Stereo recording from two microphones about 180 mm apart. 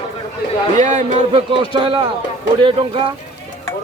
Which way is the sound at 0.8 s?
45° right (ahead or behind).